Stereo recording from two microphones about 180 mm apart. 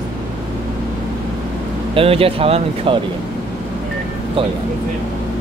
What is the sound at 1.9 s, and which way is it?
Speech, 30° right (ahead or behind).